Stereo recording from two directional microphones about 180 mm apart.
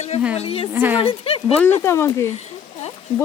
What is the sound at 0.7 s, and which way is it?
Speech, 10° right (ahead or behind).